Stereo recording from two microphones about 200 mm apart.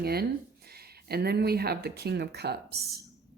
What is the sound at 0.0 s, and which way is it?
A woman's voice, 50° right (ahead or behind).